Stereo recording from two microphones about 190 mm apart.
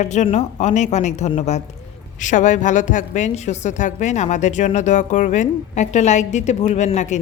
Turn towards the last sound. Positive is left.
turn(degrees=40)  # may be behind; listen again after turning